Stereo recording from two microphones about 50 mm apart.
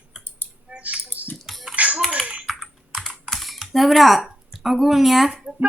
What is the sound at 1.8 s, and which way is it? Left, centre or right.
Music, right.